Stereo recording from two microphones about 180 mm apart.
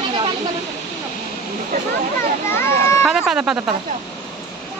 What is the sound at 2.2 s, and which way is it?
Children playing, 15° left (ahead or behind).